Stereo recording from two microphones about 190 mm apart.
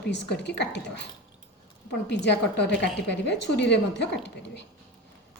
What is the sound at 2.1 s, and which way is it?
A woman's voice, 65° left (ahead or behind).